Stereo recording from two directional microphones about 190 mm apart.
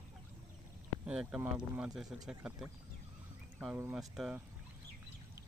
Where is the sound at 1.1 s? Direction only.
5° right (ahead or behind).